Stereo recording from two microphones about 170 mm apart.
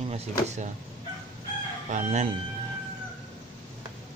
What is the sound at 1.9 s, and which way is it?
Speech, 45° right (ahead or behind).